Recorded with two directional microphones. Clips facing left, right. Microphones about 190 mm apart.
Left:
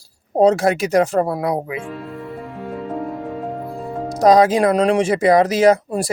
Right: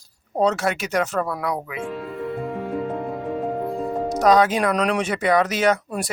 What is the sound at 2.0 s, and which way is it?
Music, centre (ahead or behind).